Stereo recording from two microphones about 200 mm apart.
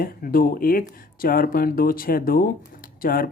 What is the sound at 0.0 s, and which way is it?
Speech, 45° left (ahead or behind).